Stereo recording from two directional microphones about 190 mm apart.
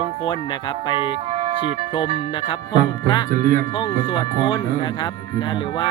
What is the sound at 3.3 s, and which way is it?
Speech, 45° right (ahead or behind).